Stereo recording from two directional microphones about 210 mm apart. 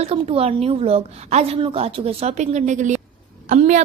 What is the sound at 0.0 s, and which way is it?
A woman's voice, 30° right (ahead or behind).